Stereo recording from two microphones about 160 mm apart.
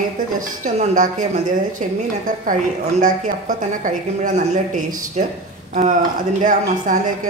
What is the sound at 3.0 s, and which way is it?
Speech, 55° right (ahead or behind).